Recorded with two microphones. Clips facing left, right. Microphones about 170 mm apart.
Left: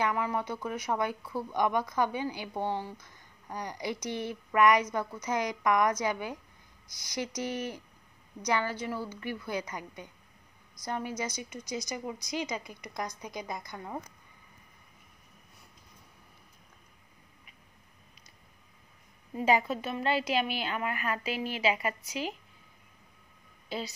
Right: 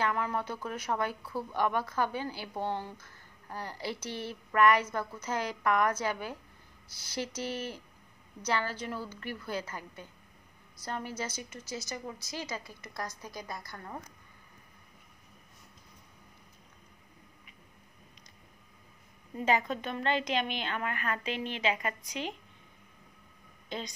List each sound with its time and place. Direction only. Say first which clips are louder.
0.0 s a woman's voice: left 1 dB; 10° left (ahead or behind)
19.3 s a woman's voice: left 2 dB; 10° left (ahead or behind)
23.7 s a woman's voice: left 2 dB; 10° left (ahead or behind)